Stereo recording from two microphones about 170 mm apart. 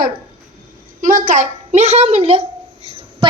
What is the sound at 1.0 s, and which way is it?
A child's voice, 50° right (ahead or behind).